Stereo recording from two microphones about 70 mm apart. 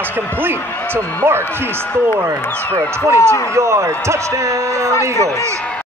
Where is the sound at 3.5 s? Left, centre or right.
Right.